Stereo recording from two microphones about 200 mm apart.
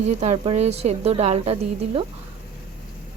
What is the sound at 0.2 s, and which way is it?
A woman's voice, 35° right (ahead or behind).